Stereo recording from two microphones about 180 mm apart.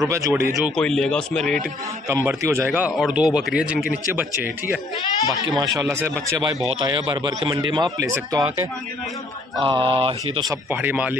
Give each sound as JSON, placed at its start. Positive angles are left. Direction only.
{"t": 0.0, "sound": "a man's voice", "side_deg": -15}
{"t": 0.6, "sound": "speech", "side_deg": 0}
{"t": 2.0, "sound": "a man's voice", "side_deg": -15}
{"t": 3.8, "sound": "speech", "side_deg": 50}
{"t": 4.1, "sound": "a man's voice", "side_deg": -10}
{"t": 6.4, "sound": "a man's voice", "side_deg": -25}
{"t": 10.5, "sound": "a man's voice", "side_deg": -10}